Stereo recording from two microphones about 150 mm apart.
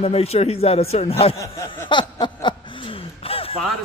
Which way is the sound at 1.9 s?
30° left (ahead or behind).